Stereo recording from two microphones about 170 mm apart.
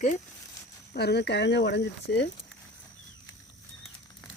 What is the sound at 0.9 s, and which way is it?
Speech, 75° left (ahead or behind).